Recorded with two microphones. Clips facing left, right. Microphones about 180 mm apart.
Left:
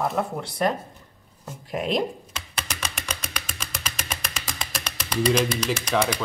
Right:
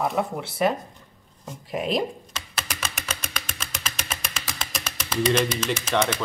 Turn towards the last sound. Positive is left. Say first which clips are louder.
# even
turn(degrees=-5)  # may be behind; listen again after turning